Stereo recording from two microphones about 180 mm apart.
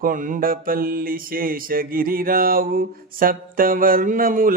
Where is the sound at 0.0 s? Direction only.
50° right (ahead or behind).